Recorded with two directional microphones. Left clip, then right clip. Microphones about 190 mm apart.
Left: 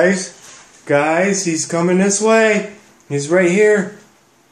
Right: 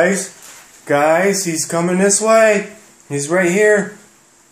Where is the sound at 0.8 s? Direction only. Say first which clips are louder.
Right 1 dB; 15° right (ahead or behind).